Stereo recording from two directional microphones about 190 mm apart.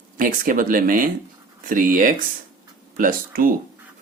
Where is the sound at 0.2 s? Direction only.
45° right (ahead or behind).